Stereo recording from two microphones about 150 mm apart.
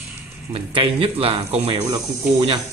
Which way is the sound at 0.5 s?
40° right (ahead or behind).